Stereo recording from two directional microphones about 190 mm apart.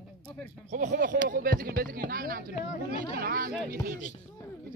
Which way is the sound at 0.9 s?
45° right (ahead or behind).